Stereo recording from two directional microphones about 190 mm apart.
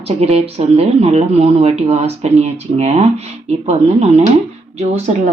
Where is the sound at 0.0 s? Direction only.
35° right (ahead or behind).